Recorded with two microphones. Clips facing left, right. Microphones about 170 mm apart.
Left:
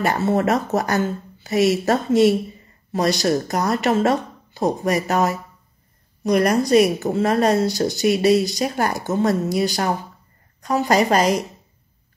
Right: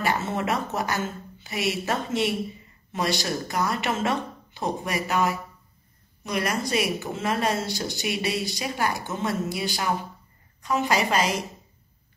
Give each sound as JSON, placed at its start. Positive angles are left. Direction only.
{"t": 0.0, "sound": "speech", "side_deg": 40}